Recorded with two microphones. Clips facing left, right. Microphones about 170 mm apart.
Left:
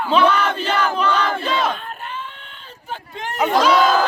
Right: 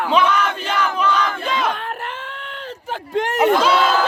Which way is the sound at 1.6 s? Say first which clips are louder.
Right 1 dB; 70° right (ahead or behind).